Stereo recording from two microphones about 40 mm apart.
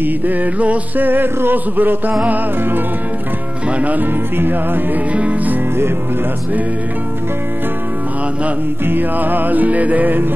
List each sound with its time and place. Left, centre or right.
0.0 s music: right
1.0 s music: right
3.8 s music: right
4.4 s music: right
5.1 s music: right
8.8 s music: right